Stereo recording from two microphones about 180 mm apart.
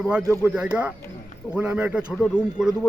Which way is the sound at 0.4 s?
10° right (ahead or behind).